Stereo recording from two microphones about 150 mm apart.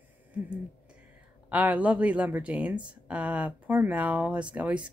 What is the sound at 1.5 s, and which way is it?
Speech, 10° right (ahead or behind).